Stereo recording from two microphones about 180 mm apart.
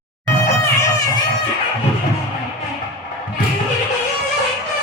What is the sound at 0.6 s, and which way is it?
Music, 20° left (ahead or behind).